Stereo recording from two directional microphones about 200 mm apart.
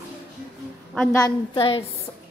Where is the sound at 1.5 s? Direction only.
25° left (ahead or behind).